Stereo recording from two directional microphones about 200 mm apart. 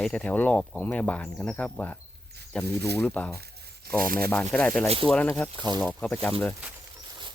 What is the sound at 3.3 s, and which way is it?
Tearing, 50° right (ahead or behind).